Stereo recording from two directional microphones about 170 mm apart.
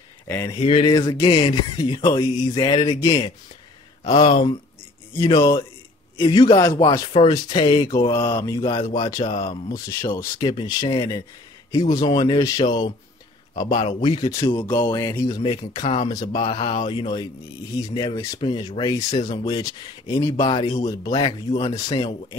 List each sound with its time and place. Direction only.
0.3 s speech: 10° left (ahead or behind)
0.6 s speech: 30° left (ahead or behind)
5.1 s speech: 20° left (ahead or behind)
8.1 s speech: 15° left (ahead or behind)
9.2 s speech: 40° left (ahead or behind)
9.5 s speech: 20° left (ahead or behind)
15.8 s speech: 40° left (ahead or behind)
16.1 s speech: 25° left (ahead or behind)